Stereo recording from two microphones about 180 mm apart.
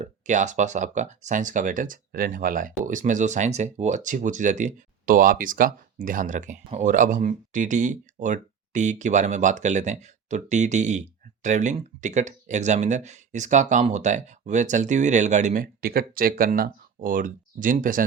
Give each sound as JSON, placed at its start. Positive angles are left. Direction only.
{"t": 0.0, "sound": "speech", "side_deg": -40}